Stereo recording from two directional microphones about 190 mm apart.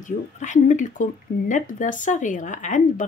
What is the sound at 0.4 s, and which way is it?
Speech, 40° left (ahead or behind).